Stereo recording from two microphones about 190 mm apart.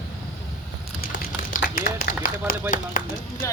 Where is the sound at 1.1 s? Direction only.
45° left (ahead or behind).